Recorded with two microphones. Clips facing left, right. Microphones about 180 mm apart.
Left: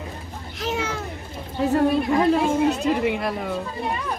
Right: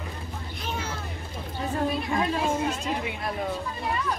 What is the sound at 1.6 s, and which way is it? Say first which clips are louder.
A woman's voice: left 9 dB; 70° left (ahead or behind).